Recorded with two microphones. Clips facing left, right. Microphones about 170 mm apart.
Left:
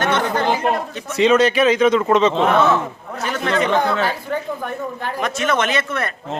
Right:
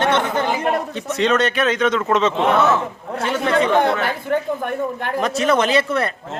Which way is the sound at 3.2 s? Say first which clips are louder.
Right 2 dB; 25° right (ahead or behind).